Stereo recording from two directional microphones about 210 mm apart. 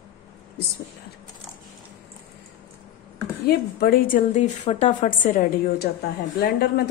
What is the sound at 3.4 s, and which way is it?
A woman's voice, 45° left (ahead or behind).